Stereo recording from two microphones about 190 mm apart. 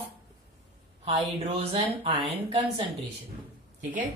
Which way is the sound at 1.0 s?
30° right (ahead or behind).